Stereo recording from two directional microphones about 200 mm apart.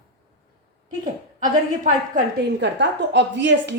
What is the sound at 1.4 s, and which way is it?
Speech, 40° right (ahead or behind).